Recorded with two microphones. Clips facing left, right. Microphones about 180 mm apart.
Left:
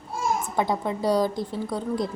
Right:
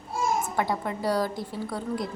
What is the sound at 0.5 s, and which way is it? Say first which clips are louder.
A child's voice: left 3 dB; 20° left (ahead or behind).